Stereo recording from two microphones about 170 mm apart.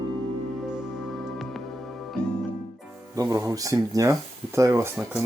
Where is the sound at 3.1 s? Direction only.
20° right (ahead or behind).